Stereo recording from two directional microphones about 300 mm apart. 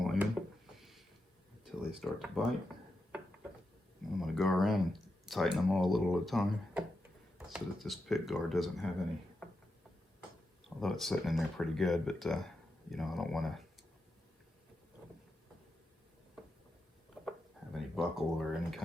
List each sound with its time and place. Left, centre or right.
0.0 s a sound: centre
1.6 s speech: centre
4.2 s speech: centre
10.8 s speech: centre
17.9 s speech: centre